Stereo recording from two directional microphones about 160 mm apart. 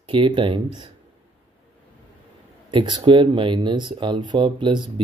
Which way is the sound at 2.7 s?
30° right (ahead or behind).